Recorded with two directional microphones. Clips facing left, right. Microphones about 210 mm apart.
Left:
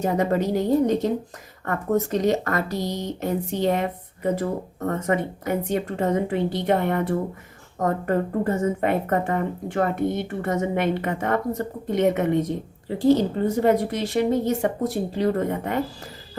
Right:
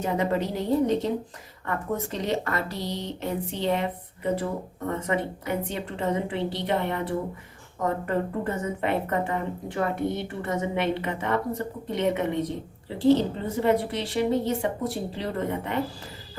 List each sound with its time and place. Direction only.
0.0 s speech: 45° left (ahead or behind)